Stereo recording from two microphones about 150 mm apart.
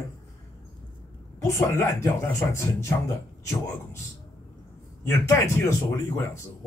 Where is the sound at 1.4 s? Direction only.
20° left (ahead or behind).